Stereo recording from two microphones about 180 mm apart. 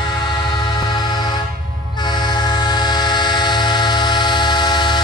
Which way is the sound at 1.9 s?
25° left (ahead or behind).